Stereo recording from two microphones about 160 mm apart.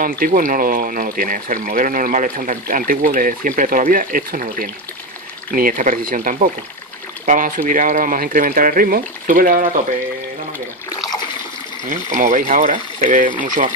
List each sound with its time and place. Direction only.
0.0 s speech: 60° right (ahead or behind)
11.9 s speech: 50° right (ahead or behind)